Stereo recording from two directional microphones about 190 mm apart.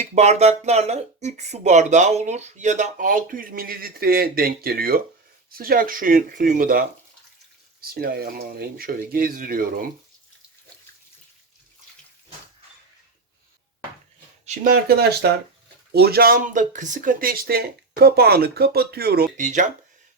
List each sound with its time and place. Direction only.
0.0 s speech: 35° right (ahead or behind)
14.4 s speech: 50° right (ahead or behind)
19.4 s speech: 40° right (ahead or behind)